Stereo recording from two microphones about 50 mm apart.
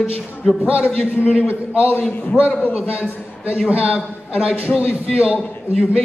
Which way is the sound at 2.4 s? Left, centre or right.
Right.